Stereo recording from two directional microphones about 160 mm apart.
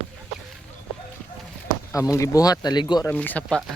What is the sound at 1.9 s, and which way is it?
Speech, 20° left (ahead or behind).